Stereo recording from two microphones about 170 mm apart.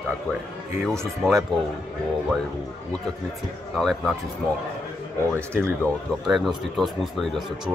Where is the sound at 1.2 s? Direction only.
Centre (ahead or behind).